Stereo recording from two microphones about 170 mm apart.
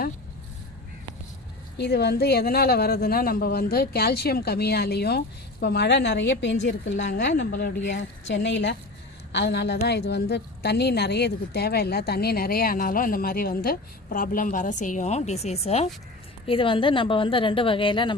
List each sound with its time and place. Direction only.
1.8 s speech: 70° left (ahead or behind); by 8.7 s 90° left
9.3 s a woman's voice: 80° left; by 18.1 s 30° left (ahead or behind)